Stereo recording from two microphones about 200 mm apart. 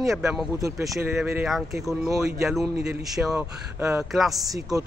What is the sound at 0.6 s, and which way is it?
Speech, 15° right (ahead or behind).